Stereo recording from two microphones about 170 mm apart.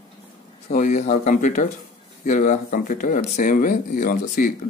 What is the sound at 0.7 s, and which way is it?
Speech, 45° left (ahead or behind).